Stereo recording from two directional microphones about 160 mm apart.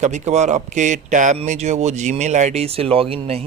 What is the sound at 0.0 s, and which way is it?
A man's voice, 45° right (ahead or behind).